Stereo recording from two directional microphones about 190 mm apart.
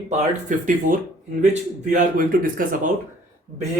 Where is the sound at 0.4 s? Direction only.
45° right (ahead or behind).